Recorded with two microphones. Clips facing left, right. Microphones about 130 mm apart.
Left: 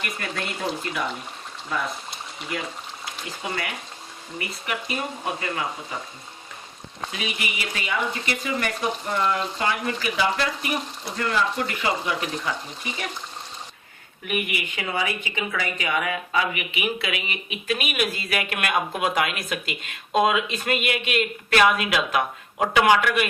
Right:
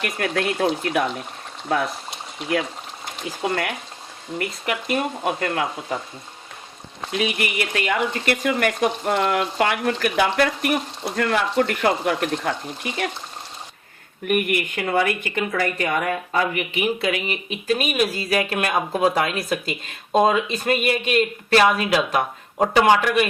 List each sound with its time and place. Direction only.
0.0 s speech: 70° right (ahead or behind)
4.4 s speech: 70° right (ahead or behind)
7.1 s speech: 55° right (ahead or behind)
14.3 s speech: 55° right (ahead or behind); by 23.3 s 30° right (ahead or behind)